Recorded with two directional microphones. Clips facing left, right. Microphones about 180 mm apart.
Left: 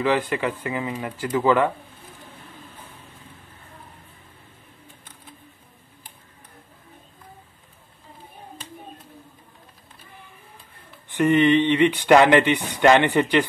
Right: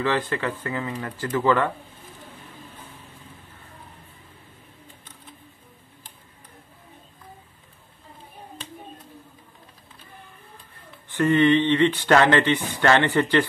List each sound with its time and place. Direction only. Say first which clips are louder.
0.0 s speech: left 2 dB; 15° left (ahead or behind)
11.1 s speech: left 1 dB; 15° left (ahead or behind)